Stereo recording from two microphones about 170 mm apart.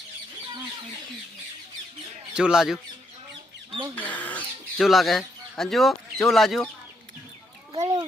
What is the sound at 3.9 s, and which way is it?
Speech, 10° left (ahead or behind).